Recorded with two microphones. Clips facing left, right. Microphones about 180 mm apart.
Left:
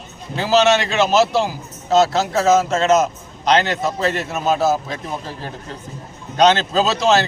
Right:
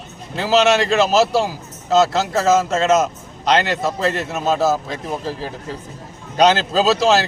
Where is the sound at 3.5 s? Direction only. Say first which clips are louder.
Even; centre (ahead or behind).